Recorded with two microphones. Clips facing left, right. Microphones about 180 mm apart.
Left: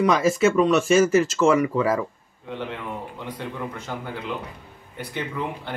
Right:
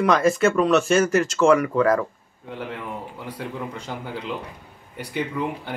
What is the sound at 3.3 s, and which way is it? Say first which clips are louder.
Speech: right 1 dB; 10° right (ahead or behind).